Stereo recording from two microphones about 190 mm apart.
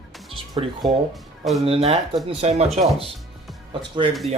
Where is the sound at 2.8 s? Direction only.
Centre (ahead or behind).